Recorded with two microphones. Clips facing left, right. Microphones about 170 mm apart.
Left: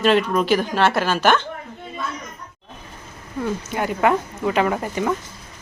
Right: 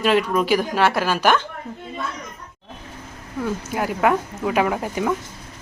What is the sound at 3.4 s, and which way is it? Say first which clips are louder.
Speech: even; 5° right (ahead or behind).